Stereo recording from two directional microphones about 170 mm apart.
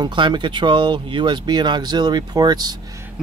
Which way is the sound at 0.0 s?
25° right (ahead or behind).